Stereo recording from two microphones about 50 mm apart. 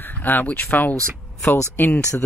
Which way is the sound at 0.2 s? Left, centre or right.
Left.